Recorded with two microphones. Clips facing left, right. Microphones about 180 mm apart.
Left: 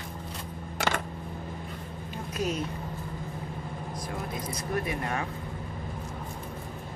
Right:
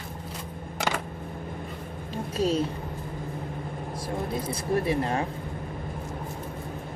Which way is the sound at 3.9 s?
30° right (ahead or behind).